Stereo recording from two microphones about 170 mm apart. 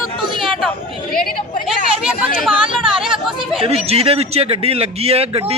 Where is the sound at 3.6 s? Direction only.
35° right (ahead or behind).